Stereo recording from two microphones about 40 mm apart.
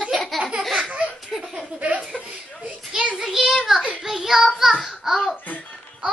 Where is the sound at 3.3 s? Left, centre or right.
Centre.